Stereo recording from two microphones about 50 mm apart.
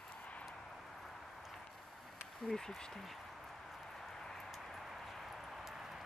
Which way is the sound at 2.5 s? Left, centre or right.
Centre.